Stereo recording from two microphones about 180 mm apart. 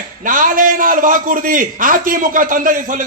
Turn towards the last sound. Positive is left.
turn(degrees=-50)  # may be behind; listen again after turning